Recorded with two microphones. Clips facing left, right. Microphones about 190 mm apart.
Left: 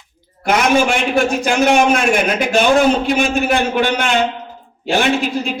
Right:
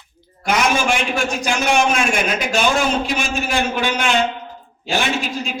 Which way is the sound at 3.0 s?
60° left (ahead or behind).